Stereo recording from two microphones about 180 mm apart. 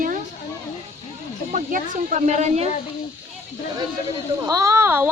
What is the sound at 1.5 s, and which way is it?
Speech, 45° right (ahead or behind).